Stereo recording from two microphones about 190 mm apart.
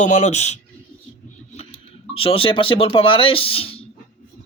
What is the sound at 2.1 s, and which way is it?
Speech, 30° left (ahead or behind).